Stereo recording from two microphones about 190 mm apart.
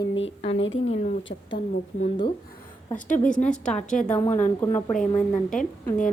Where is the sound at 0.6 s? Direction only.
90° left.